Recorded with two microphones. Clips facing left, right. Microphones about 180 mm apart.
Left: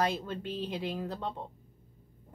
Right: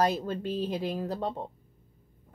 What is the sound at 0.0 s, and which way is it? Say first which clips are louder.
Speech: right 4 dB; 40° right (ahead or behind).